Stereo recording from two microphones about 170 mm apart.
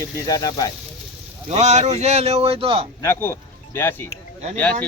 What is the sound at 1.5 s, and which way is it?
Speech, 45° right (ahead or behind).